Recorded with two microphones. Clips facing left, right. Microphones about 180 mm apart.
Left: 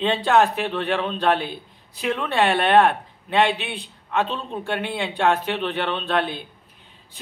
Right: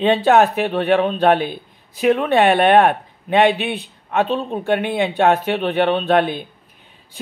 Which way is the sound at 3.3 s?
15° right (ahead or behind).